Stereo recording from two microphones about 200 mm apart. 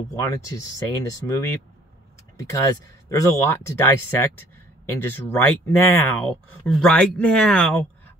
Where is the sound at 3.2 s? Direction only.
15° left (ahead or behind).